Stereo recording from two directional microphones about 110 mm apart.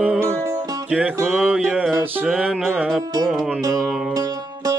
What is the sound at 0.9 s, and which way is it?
Music, 10° right (ahead or behind).